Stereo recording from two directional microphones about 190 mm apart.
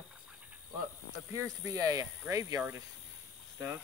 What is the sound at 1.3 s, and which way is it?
Speech, 15° right (ahead or behind).